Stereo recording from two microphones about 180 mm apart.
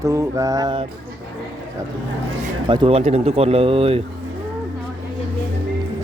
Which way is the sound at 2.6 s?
30° right (ahead or behind).